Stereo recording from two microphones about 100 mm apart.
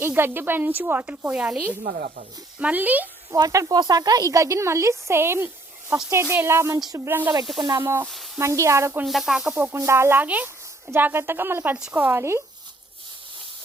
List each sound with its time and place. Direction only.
0.0 s speech: 20° right (ahead or behind)
2.6 s a sound: 15° right (ahead or behind)
3.3 s speech: 35° right (ahead or behind)
7.4 s speech: centre (ahead or behind)
7.7 s speech: 30° right (ahead or behind)
9.0 s a sound: 5° right (ahead or behind)
9.7 s speech: 25° right (ahead or behind)
12.0 s speech: 25° right (ahead or behind)